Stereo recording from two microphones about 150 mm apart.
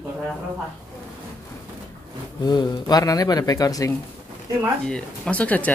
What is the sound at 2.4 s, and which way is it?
Speech, 30° left (ahead or behind).